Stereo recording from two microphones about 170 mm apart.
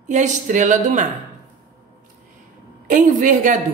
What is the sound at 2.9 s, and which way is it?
Speech, 50° right (ahead or behind).